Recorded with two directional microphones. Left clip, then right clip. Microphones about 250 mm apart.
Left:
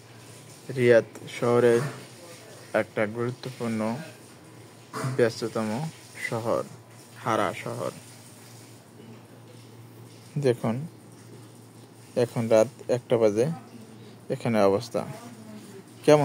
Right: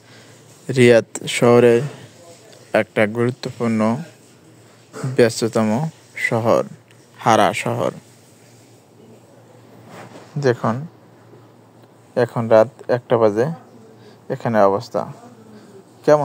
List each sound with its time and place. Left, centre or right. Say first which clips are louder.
0.7 s speech: right 7 dB; right
5.1 s speech: right 9 dB; right
10.4 s speech: right 7 dB; centre
12.1 s a man's voice: right 8 dB; centre
16.1 s a man's voice: right 5 dB; centre